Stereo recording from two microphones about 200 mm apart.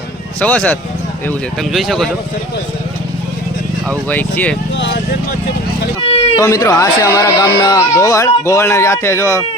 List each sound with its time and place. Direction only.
0.3 s speech: 5° left (ahead or behind)
3.8 s speech: 10° left (ahead or behind)
4.7 s speech: 65° left (ahead or behind)
6.4 s speech: 15° left (ahead or behind)